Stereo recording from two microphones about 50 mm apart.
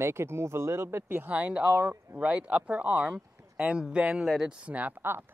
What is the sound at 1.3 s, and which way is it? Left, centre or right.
Speech, right.